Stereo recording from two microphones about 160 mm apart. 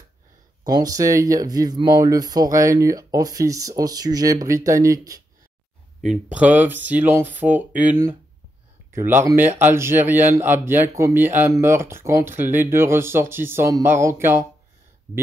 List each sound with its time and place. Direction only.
0.7 s speech: 25° right (ahead or behind)
6.0 s speech: 5° right (ahead or behind)